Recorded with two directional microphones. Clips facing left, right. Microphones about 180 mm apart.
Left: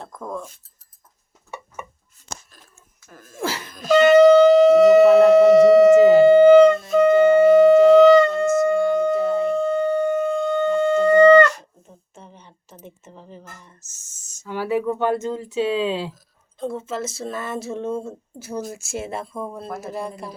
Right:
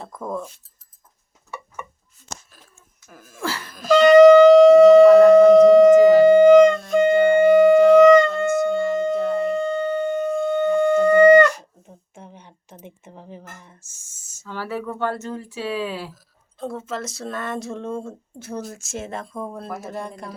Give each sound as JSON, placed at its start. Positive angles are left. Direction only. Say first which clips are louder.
{"t": 0.0, "sound": "speech", "louder": "right 2 dB", "side_deg": -5}
{"t": 3.1, "sound": "speech", "louder": "even", "side_deg": -10}
{"t": 3.7, "sound": "shofar", "louder": "right 1 dB", "side_deg": 0}
{"t": 6.1, "sound": "wind instrument", "louder": "even", "side_deg": 5}
{"t": 14.4, "sound": "speech", "louder": "left 6 dB", "side_deg": 15}
{"t": 16.6, "sound": "speech", "louder": "left 2 dB", "side_deg": 0}